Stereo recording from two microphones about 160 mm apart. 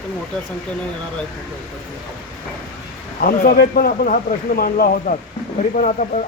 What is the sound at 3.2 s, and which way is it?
Speech, 65° left (ahead or behind).